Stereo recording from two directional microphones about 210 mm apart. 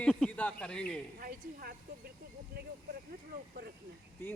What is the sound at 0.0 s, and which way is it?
Speech, 5° left (ahead or behind).